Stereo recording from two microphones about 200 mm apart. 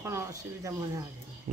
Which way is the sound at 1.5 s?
40° right (ahead or behind).